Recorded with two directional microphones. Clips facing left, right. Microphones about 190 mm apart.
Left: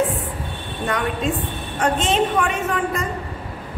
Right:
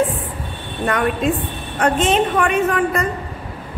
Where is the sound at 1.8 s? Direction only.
60° right (ahead or behind).